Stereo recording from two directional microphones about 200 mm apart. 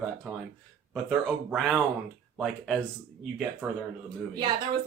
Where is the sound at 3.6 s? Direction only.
15° right (ahead or behind).